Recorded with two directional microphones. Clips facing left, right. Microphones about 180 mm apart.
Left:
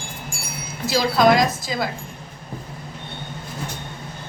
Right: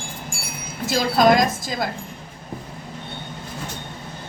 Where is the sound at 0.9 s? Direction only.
50° right (ahead or behind).